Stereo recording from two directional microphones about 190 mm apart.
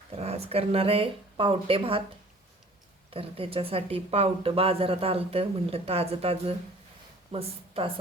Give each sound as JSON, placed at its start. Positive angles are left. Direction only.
{"t": 0.2, "sound": "speech", "side_deg": -30}
{"t": 3.1, "sound": "a woman's voice", "side_deg": -30}